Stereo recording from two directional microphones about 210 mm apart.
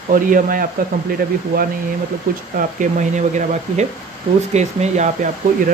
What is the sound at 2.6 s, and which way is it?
Speech, 40° right (ahead or behind).